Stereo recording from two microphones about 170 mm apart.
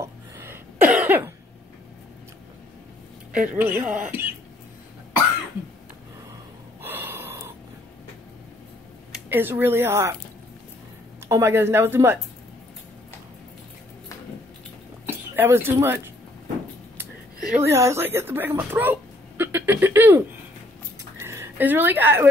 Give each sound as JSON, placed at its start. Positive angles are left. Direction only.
{"t": 0.0, "sound": "cough", "side_deg": -15}
{"t": 3.3, "sound": "speech", "side_deg": -10}
{"t": 6.8, "sound": "gasp", "side_deg": -10}
{"t": 9.1, "sound": "speech", "side_deg": -10}
{"t": 11.2, "sound": "speech", "side_deg": -15}
{"t": 15.0, "sound": "a woman's voice", "side_deg": -10}